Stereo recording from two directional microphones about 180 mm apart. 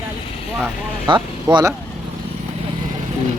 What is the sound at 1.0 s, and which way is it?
Speech, 25° right (ahead or behind).